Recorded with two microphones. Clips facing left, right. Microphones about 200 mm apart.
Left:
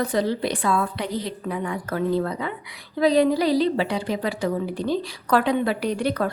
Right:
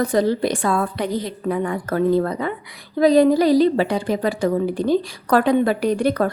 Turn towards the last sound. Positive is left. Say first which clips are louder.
# right 5 dB
turn(degrees=-45)  # may be behind; listen again after turning